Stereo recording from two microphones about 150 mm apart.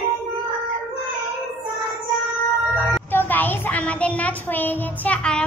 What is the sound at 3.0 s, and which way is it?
A child's voice, 10° left (ahead or behind).